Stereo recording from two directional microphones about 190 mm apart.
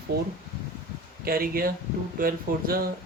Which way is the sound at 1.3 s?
50° right (ahead or behind).